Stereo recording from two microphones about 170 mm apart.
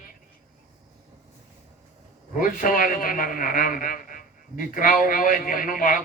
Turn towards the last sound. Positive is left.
turn(degrees=55)  # may be behind; listen again after turning